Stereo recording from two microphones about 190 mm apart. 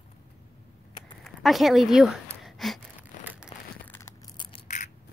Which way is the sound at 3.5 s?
30° left (ahead or behind).